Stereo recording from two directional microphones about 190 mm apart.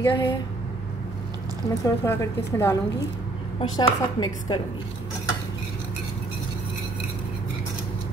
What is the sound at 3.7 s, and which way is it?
Speech, 25° left (ahead or behind).